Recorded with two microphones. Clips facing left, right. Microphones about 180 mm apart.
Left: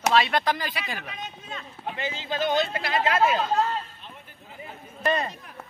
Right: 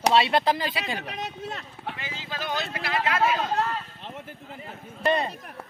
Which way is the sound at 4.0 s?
90° right.